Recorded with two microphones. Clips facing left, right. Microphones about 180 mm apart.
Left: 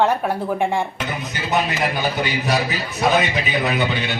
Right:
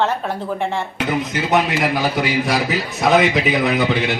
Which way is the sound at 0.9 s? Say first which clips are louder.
Right 6 dB; 85° right.